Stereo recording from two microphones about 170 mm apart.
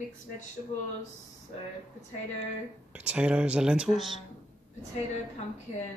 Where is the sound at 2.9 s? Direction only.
5° right (ahead or behind).